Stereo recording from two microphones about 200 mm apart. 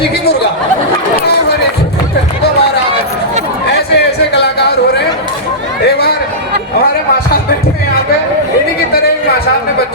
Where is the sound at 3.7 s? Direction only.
55° left (ahead or behind).